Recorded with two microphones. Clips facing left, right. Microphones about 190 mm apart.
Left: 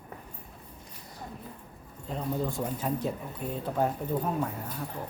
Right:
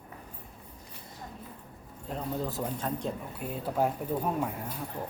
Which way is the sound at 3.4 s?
5° right (ahead or behind).